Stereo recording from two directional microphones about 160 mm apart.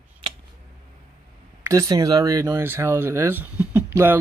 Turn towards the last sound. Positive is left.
turn(degrees=-15)  # may be behind; listen again after turning